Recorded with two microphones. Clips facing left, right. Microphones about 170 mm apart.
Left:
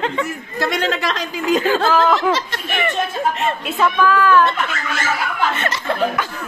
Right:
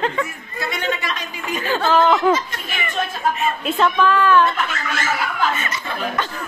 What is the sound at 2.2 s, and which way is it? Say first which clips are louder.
Speech: right 1 dB; 75° left (ahead or behind).